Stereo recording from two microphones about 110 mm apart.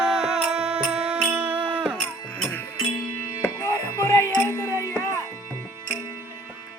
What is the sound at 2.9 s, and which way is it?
Music, 40° left (ahead or behind).